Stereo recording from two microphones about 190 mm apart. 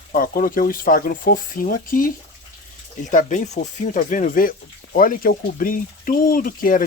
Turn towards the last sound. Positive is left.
turn(degrees=45)  # may be behind; listen again after turning